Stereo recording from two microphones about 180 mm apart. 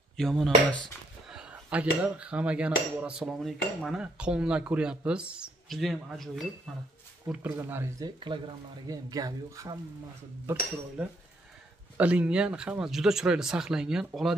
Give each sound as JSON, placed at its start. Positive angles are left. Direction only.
{"t": 0.2, "sound": "speech", "side_deg": 0}
{"t": 1.3, "sound": "cutlery", "side_deg": -5}
{"t": 3.0, "sound": "speech", "side_deg": -5}
{"t": 8.3, "sound": "speech", "side_deg": -25}